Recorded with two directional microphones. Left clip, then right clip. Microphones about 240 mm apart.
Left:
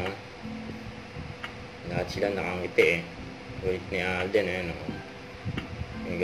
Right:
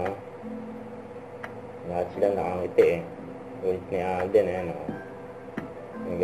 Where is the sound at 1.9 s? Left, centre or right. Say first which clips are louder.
Right 4 dB; left.